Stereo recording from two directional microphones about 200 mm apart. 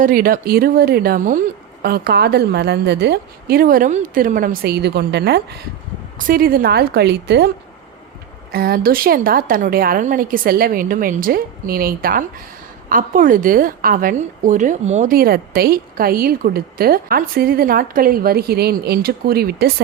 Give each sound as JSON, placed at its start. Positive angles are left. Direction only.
{"t": 0.0, "sound": "a woman's voice", "side_deg": -45}
{"t": 8.5, "sound": "a woman's voice", "side_deg": -50}